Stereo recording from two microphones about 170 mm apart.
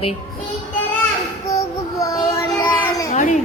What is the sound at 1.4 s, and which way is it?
Child singing, 20° left (ahead or behind).